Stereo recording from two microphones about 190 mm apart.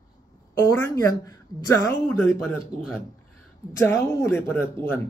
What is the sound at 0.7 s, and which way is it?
Speech, 15° left (ahead or behind).